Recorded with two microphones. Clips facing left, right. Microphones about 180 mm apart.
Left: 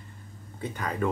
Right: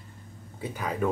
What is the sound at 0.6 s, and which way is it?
Speech, 5° right (ahead or behind).